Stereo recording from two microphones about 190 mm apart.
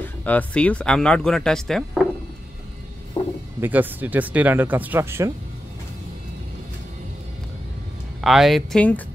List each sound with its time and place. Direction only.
0.0 s speech: 10° left (ahead or behind)
3.2 s a sound: 30° left (ahead or behind)
3.6 s speech: 10° right (ahead or behind)
8.2 s speech: centre (ahead or behind)